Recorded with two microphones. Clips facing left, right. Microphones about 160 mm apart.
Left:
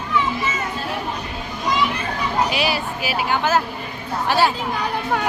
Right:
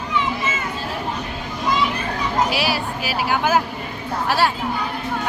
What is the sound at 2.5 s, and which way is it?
Speech, centre (ahead or behind).